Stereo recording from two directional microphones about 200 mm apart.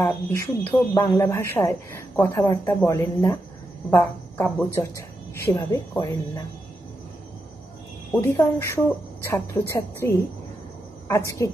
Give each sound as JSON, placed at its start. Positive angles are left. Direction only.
{"t": 0.0, "sound": "speech", "side_deg": 15}
{"t": 8.1, "sound": "speech", "side_deg": 10}